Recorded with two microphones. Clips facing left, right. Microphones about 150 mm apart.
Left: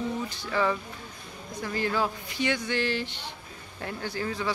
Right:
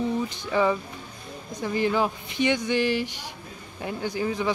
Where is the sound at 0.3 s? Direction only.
20° right (ahead or behind).